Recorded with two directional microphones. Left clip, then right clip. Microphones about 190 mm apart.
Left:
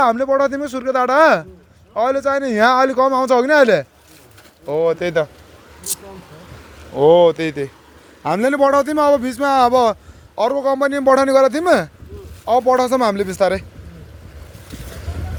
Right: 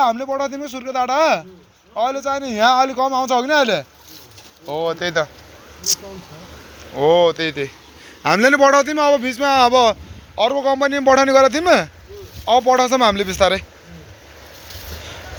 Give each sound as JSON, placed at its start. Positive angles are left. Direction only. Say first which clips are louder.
{"t": 0.0, "sound": "a man's voice", "louder": "left 3 dB", "side_deg": 60}
{"t": 6.9, "sound": "speech", "louder": "left 3 dB", "side_deg": 50}
{"t": 8.2, "sound": "a man's voice", "louder": "right 3 dB", "side_deg": 5}
{"t": 10.3, "sound": "a man's voice", "louder": "even", "side_deg": 40}
{"t": 10.6, "sound": "a man's voice", "louder": "even", "side_deg": 25}